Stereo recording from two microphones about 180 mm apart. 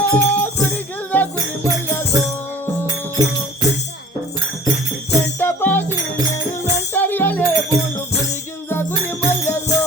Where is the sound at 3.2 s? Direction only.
20° right (ahead or behind).